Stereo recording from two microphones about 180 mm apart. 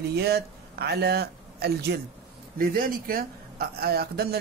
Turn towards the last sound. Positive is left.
turn(degrees=-60)  # may be behind; listen again after turning